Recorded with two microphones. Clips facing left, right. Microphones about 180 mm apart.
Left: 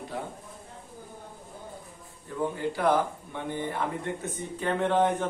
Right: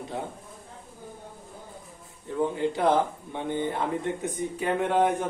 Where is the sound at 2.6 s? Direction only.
20° right (ahead or behind).